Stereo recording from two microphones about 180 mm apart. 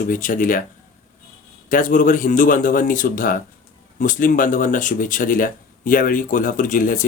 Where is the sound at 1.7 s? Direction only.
45° left (ahead or behind).